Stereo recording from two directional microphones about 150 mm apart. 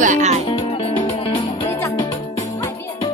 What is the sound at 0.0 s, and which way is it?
Music, 55° right (ahead or behind).